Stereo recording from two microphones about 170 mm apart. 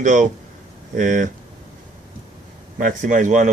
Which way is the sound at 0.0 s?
45° right (ahead or behind).